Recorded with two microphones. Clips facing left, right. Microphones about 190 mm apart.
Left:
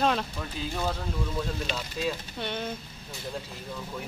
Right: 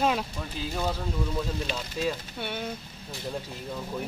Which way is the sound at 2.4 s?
5° right (ahead or behind).